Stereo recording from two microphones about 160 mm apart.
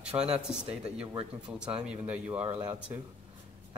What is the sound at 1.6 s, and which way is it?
Speech, 5° right (ahead or behind).